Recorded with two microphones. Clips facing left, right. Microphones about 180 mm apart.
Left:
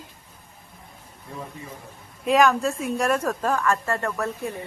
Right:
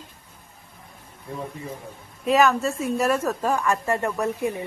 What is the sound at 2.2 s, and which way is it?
A woman's voice, centre (ahead or behind).